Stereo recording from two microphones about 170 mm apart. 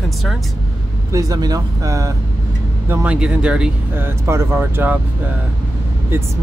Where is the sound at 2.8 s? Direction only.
5° right (ahead or behind).